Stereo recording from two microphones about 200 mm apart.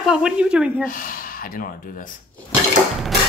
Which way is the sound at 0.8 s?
45° left (ahead or behind).